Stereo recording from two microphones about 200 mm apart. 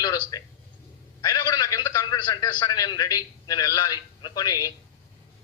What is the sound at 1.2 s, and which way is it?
A man's voice, 20° left (ahead or behind).